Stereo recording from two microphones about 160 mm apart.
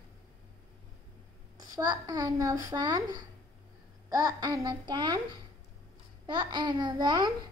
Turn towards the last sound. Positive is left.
turn(degrees=-25)  # may be behind; listen again after turning